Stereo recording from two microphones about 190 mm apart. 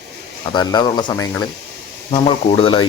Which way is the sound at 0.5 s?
25° left (ahead or behind).